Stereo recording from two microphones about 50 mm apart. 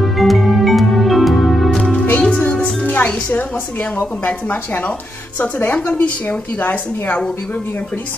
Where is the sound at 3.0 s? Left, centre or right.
Left.